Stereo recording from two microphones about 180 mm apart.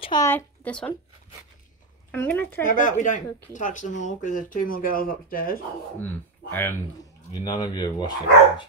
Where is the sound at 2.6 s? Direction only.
45° left (ahead or behind).